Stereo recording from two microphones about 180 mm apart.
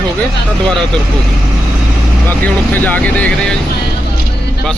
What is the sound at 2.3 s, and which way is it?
Speech, 10° left (ahead or behind).